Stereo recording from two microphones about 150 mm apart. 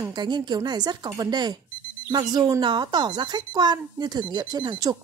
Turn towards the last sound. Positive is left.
turn(degrees=-30)  # may be behind; listen again after turning